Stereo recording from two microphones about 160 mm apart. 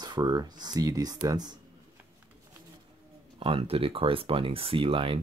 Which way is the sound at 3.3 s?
35° right (ahead or behind).